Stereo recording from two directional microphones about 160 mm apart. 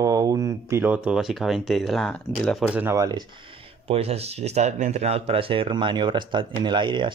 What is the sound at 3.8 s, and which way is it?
Speech, 40° right (ahead or behind).